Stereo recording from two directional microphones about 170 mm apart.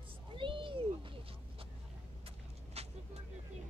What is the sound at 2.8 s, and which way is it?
Vehicle, 40° right (ahead or behind).